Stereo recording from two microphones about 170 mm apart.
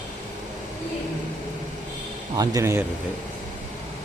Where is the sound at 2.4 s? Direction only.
20° right (ahead or behind).